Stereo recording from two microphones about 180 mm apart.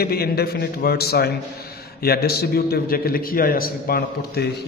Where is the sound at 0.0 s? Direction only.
60° left (ahead or behind).